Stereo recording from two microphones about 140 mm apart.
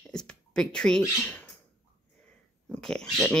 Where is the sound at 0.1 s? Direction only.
5° left (ahead or behind).